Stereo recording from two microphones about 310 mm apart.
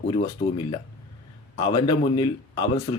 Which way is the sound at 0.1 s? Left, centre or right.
Centre.